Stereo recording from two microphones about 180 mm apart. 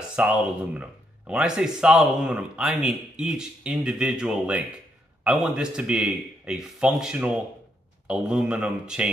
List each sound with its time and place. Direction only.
0.1 s speech: 5° right (ahead or behind)